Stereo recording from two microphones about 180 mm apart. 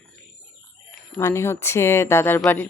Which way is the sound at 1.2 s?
15° left (ahead or behind).